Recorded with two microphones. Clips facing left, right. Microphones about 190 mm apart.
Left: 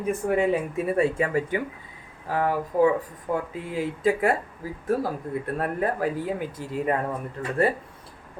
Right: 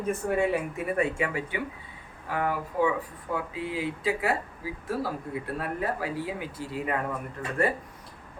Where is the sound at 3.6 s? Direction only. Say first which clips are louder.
Left 6 dB; 50° left (ahead or behind).